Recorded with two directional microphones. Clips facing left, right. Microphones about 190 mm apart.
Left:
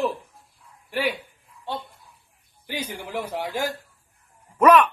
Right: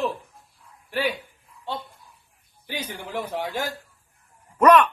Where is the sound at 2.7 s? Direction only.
10° left (ahead or behind).